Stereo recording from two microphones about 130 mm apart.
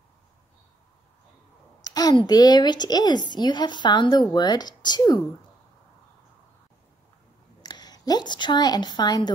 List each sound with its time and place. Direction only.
1.8 s a woman's voice: 30° left (ahead or behind)
7.6 s a woman's voice: 30° left (ahead or behind)